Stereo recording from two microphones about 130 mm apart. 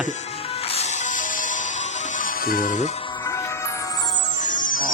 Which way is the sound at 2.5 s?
90° left.